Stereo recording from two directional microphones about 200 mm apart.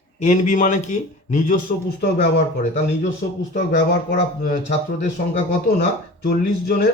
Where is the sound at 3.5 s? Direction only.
55° left (ahead or behind).